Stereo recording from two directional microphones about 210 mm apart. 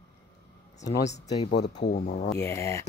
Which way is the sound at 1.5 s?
55° left (ahead or behind).